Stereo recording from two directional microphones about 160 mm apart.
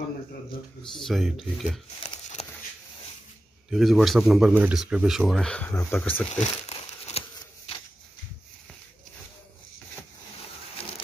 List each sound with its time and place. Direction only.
1.0 s speech: centre (ahead or behind)
2.4 s a sound: 40° left (ahead or behind)
3.7 s speech: centre (ahead or behind)
6.4 s crumpling: 40° left (ahead or behind)